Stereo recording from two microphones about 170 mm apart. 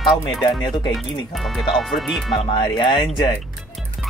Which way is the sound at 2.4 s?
25° left (ahead or behind).